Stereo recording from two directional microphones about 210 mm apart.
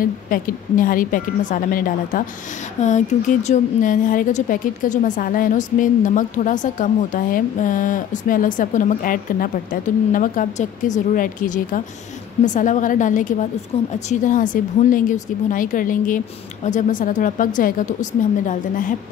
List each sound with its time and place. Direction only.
0.0 s a woman's voice: 40° left (ahead or behind)